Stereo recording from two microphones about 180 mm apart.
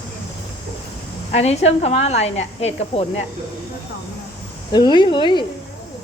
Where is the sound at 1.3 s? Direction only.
35° left (ahead or behind).